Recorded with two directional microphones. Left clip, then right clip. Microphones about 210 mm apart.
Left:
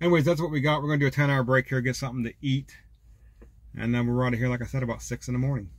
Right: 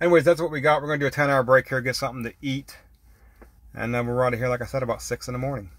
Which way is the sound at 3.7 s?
50° right (ahead or behind).